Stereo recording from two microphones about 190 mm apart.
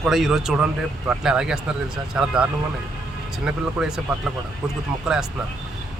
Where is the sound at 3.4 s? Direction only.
5° right (ahead or behind).